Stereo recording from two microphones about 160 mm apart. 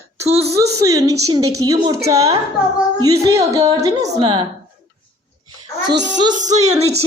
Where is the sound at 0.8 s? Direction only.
20° right (ahead or behind).